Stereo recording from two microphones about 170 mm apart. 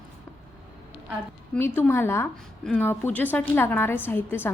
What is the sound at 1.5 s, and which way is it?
Speech, 10° left (ahead or behind).